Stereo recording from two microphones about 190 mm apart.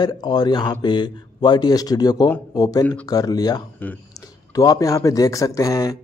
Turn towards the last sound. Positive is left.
turn(degrees=15)  # may be behind; listen again after turning